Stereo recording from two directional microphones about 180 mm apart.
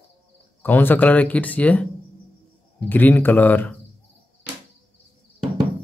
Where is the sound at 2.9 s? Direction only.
10° left (ahead or behind).